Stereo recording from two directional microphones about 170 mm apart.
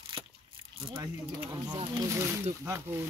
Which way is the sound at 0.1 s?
30° right (ahead or behind).